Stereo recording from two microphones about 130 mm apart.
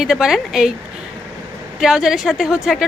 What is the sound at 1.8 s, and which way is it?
A woman's voice, 5° right (ahead or behind).